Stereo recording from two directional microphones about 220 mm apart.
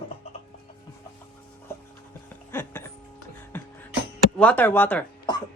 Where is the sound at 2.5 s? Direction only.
10° left (ahead or behind).